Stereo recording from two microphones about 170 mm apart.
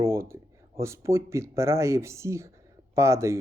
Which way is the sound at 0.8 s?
15° right (ahead or behind).